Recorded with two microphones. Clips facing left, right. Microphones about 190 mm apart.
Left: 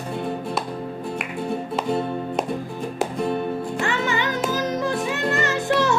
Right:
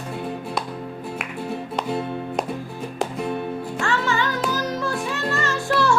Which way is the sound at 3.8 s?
20° left (ahead or behind).